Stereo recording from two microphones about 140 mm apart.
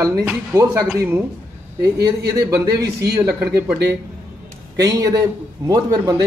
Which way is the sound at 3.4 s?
10° right (ahead or behind).